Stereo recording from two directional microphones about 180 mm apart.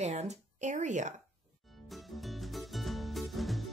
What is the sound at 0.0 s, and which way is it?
Speech, 40° right (ahead or behind).